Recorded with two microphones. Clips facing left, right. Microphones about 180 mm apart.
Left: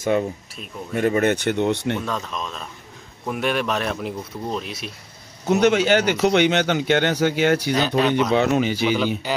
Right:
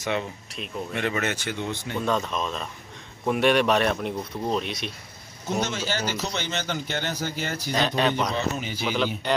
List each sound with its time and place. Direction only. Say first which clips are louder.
0.0 s speech: left 7 dB; 50° left (ahead or behind)
1.3 s speech: left 10 dB; 60° left (ahead or behind)
2.0 s speech: right 2 dB; centre (ahead or behind)
5.5 s speech: left 11 dB; 70° left (ahead or behind); by 8.8 s 85° left
8.9 s speech: left 4 dB; 5° left (ahead or behind)